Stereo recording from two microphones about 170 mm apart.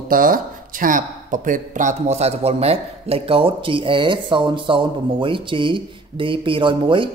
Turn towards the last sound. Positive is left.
turn(degrees=-30)  # may be behind; listen again after turning